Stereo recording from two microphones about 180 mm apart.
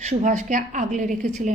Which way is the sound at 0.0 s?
40° right (ahead or behind).